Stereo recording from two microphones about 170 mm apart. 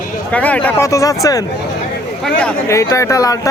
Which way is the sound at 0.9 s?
20° left (ahead or behind).